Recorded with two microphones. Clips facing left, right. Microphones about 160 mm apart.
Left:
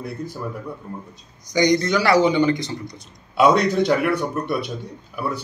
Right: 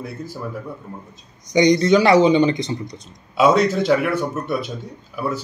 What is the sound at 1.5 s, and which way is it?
Speech, 20° right (ahead or behind).